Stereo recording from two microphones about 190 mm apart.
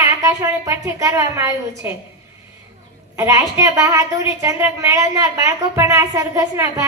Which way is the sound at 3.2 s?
15° right (ahead or behind).